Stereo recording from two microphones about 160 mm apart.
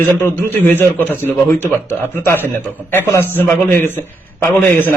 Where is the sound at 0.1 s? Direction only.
10° left (ahead or behind).